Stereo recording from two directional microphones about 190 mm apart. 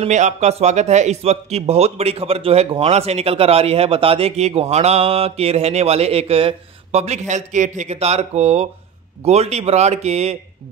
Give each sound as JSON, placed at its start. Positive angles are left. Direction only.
{"t": 0.0, "sound": "a man's voice", "side_deg": -35}